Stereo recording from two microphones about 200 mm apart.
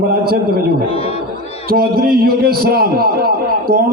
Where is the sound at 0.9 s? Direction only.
30° left (ahead or behind).